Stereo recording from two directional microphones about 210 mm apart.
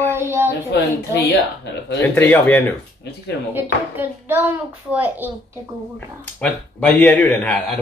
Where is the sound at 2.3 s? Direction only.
10° left (ahead or behind).